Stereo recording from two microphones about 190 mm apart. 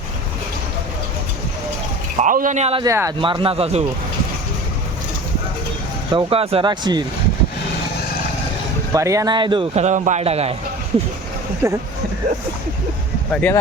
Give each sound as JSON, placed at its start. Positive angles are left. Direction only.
{"t": 2.2, "sound": "a man's voice", "side_deg": -45}
{"t": 2.8, "sound": "speech", "side_deg": -15}
{"t": 3.2, "sound": "a man's voice", "side_deg": -25}
{"t": 6.1, "sound": "a man's voice", "side_deg": -30}
{"t": 8.9, "sound": "a man's voice", "side_deg": -15}
{"t": 11.6, "sound": "speech", "side_deg": -10}
{"t": 13.3, "sound": "speech", "side_deg": 10}